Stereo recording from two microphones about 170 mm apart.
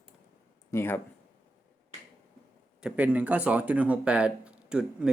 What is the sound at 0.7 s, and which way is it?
Speech, 15° left (ahead or behind).